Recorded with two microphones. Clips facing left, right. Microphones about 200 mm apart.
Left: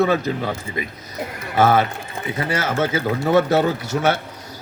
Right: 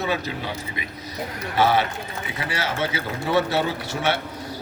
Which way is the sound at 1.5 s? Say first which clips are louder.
Left 4 dB; 50° left (ahead or behind).